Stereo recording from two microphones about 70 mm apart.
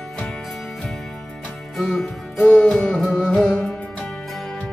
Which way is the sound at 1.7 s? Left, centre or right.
Centre.